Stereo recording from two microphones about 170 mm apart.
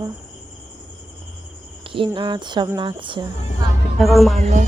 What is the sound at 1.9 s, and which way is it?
Speech, 30° right (ahead or behind).